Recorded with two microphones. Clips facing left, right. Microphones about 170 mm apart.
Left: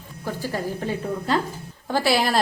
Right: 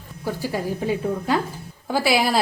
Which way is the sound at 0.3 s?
10° right (ahead or behind).